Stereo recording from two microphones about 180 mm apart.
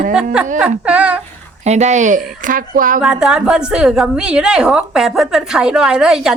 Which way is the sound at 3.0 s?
5° right (ahead or behind).